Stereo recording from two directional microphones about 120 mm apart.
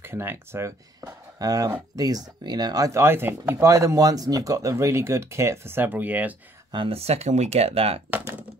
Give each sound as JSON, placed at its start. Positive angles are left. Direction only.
{"t": 0.0, "sound": "speech", "side_deg": -20}
{"t": 6.7, "sound": "speech", "side_deg": -50}